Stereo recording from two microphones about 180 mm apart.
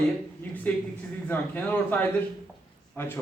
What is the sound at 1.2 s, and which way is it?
A man's voice, 10° left (ahead or behind).